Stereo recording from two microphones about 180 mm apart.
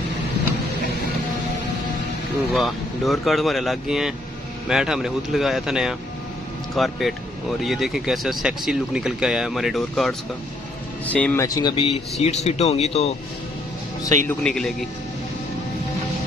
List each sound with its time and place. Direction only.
2.5 s speech: centre (ahead or behind)
11.1 s speech: 10° left (ahead or behind)
11.4 s speech: 20° left (ahead or behind)
14.2 s speech: 5° left (ahead or behind)